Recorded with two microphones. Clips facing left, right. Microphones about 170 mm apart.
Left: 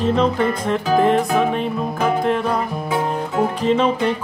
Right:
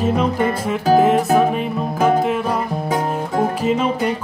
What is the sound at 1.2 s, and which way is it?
Music, 40° right (ahead or behind).